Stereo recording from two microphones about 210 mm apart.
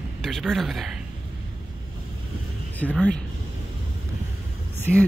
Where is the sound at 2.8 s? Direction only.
Centre (ahead or behind).